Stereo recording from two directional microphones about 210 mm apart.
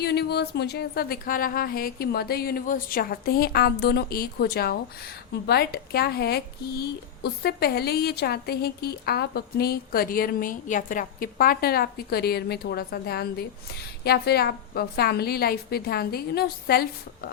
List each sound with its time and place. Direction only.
0.0 s speech: 50° left (ahead or behind)